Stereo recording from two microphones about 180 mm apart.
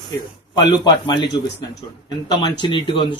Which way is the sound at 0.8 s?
25° left (ahead or behind).